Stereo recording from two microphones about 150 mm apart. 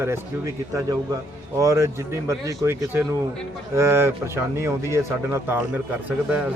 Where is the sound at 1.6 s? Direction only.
20° right (ahead or behind).